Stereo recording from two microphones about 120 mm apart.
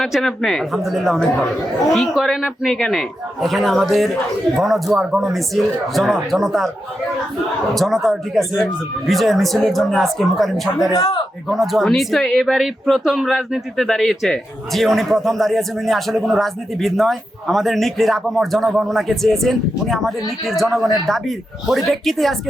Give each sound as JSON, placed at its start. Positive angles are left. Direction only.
{"t": 0.0, "sound": "speech", "side_deg": 0}
{"t": 7.7, "sound": "speech", "side_deg": 0}
{"t": 10.8, "sound": "speech", "side_deg": 30}
{"t": 11.4, "sound": "speech", "side_deg": 0}